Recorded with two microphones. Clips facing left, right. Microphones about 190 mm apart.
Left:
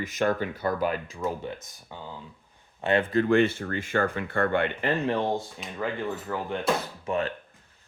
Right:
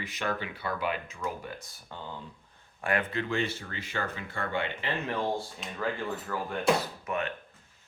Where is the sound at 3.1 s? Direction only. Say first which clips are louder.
Left 10 dB; 45° left (ahead or behind).